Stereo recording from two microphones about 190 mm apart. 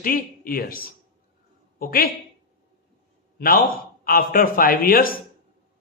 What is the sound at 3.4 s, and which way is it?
A man's voice, 50° left (ahead or behind).